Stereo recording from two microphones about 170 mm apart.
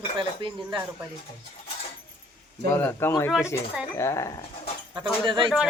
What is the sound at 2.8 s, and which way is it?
Speech, 15° left (ahead or behind).